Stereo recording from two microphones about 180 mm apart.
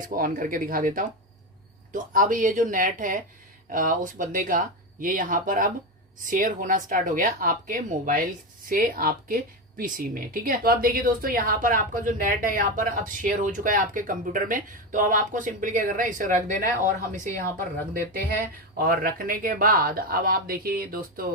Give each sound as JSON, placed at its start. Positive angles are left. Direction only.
{"t": 0.0, "sound": "speech", "side_deg": -50}
{"t": 18.8, "sound": "speech", "side_deg": -55}